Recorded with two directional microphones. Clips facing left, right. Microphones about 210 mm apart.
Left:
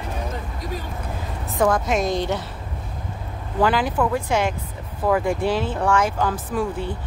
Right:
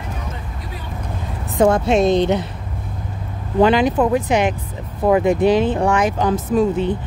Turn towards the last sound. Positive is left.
turn(degrees=-20)  # may be behind; listen again after turning